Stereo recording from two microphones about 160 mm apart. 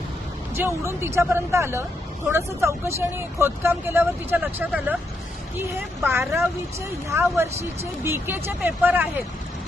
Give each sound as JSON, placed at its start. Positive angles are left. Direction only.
{"t": 0.5, "sound": "speech", "side_deg": -15}
{"t": 6.1, "sound": "speech", "side_deg": -15}